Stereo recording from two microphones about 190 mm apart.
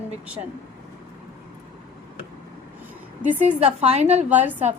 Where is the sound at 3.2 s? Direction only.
10° right (ahead or behind).